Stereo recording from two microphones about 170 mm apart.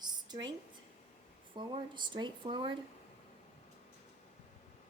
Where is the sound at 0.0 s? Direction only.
25° right (ahead or behind).